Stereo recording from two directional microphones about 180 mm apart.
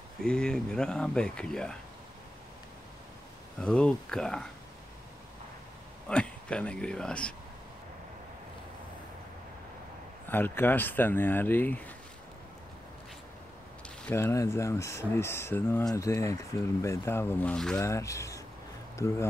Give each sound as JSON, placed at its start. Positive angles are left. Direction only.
{"t": 0.2, "sound": "speech", "side_deg": 5}
{"t": 3.6, "sound": "speech", "side_deg": 5}
{"t": 6.0, "sound": "speech", "side_deg": 5}
{"t": 10.2, "sound": "speech", "side_deg": 10}
{"t": 13.8, "sound": "speech", "side_deg": 10}
{"t": 17.7, "sound": "speech", "side_deg": 15}